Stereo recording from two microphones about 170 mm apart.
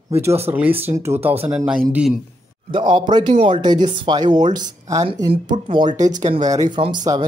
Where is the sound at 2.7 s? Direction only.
30° right (ahead or behind).